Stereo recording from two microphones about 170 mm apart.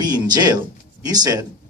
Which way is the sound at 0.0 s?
25° right (ahead or behind).